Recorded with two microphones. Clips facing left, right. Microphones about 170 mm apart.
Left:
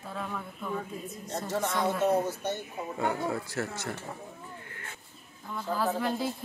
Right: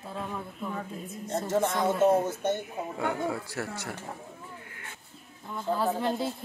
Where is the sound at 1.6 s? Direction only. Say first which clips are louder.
Left 1 dB; 20° right (ahead or behind).